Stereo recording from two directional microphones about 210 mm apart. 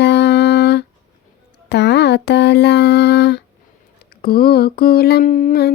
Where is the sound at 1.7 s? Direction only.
55° left (ahead or behind).